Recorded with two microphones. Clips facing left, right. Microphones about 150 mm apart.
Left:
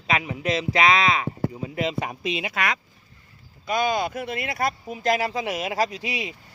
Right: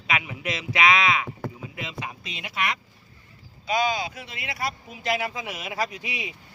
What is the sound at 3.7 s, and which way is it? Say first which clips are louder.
Speech: left 2 dB; 50° left (ahead or behind).